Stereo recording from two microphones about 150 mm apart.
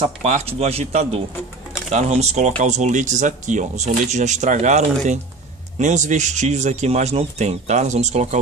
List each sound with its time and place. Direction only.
0.0 s speech: 45° right (ahead or behind)